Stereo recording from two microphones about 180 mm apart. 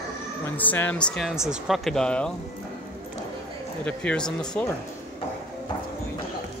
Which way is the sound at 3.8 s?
5° left (ahead or behind).